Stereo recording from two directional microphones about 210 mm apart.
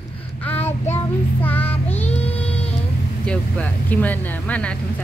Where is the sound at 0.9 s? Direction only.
10° left (ahead or behind).